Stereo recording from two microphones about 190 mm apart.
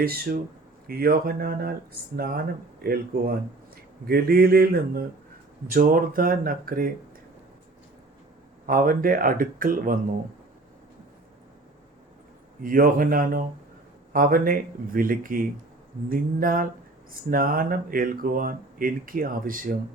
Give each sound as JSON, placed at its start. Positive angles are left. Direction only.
{"t": 0.0, "sound": "speech", "side_deg": -55}
{"t": 8.6, "sound": "speech", "side_deg": -45}
{"t": 12.6, "sound": "speech", "side_deg": -50}